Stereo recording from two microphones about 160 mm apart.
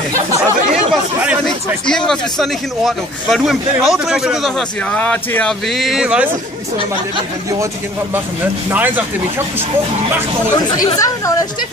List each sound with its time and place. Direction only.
1.4 s a man's voice: 5° left (ahead or behind)
8.6 s speech: 10° right (ahead or behind)
10.5 s speech: 20° left (ahead or behind)